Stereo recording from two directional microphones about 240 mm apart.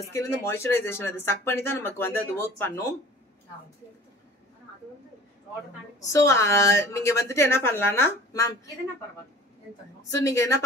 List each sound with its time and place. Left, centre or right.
0.0 s speech: centre
5.9 s speech: centre
10.0 s speech: centre